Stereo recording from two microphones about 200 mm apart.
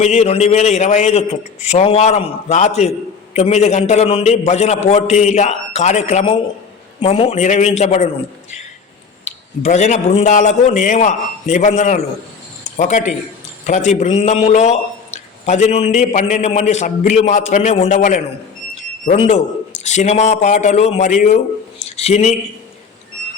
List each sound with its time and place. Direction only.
0.0 s a man's voice: 35° left (ahead or behind)
18.7 s a sound: 30° left (ahead or behind)
19.8 s a man's voice: 35° left (ahead or behind)